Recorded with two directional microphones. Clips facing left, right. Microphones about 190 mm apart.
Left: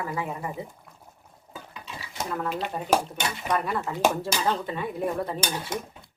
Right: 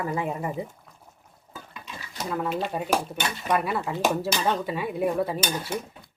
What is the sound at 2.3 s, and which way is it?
Speech, 5° right (ahead or behind).